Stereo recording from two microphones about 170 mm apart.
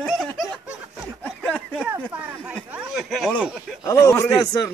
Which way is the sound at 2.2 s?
10° right (ahead or behind).